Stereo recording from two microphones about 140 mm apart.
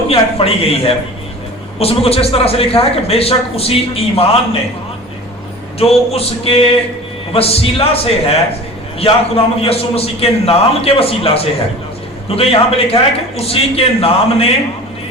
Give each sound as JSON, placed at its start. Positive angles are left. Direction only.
{"t": 0.1, "sound": "a man's voice", "side_deg": 45}
{"t": 5.8, "sound": "a man's voice", "side_deg": 45}